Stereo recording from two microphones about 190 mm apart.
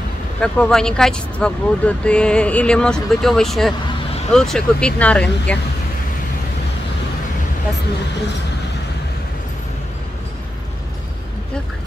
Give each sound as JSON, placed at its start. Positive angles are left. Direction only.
{"t": 0.4, "sound": "speech", "side_deg": 5}